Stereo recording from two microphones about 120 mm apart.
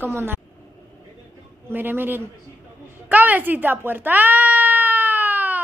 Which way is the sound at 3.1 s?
15° right (ahead or behind).